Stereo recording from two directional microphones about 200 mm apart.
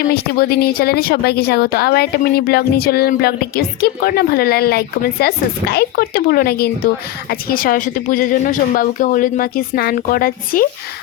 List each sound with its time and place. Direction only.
0.1 s a woman's voice: 50° left (ahead or behind)